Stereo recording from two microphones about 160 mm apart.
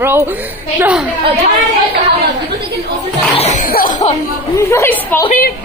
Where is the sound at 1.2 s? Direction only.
40° right (ahead or behind).